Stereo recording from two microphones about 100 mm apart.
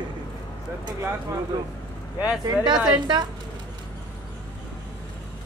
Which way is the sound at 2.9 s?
45° right (ahead or behind).